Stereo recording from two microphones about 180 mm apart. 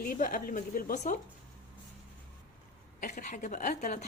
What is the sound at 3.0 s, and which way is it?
A woman's voice, 45° left (ahead or behind).